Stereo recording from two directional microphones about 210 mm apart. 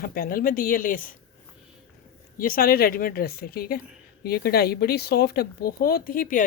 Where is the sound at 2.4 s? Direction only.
45° left (ahead or behind).